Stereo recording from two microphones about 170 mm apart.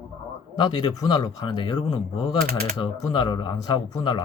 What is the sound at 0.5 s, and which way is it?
Speech, 25° left (ahead or behind).